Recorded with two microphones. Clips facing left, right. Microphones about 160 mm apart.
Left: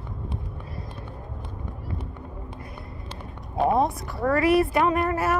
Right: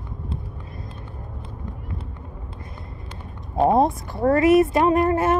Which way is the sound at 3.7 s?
25° right (ahead or behind).